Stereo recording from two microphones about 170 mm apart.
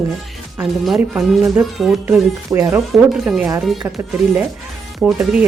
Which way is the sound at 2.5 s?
15° right (ahead or behind).